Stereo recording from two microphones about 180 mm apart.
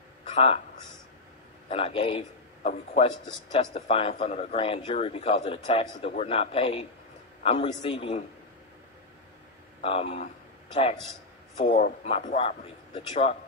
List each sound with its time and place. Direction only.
1.7 s a man's voice: 30° left (ahead or behind)
9.8 s a man's voice: 35° left (ahead or behind)
11.5 s speech: 45° left (ahead or behind)
12.4 s speech: 30° left (ahead or behind)